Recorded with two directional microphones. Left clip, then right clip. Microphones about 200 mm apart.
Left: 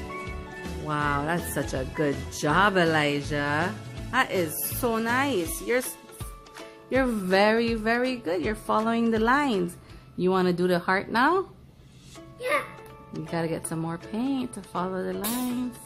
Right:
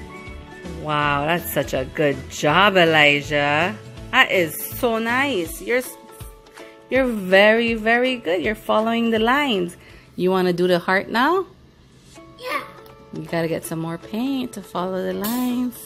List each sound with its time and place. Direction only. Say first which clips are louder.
0.8 s speech: right 7 dB; 15° right (ahead or behind)
6.9 s speech: right 7 dB; 10° right (ahead or behind)
13.3 s speech: right 6 dB; 20° right (ahead or behind)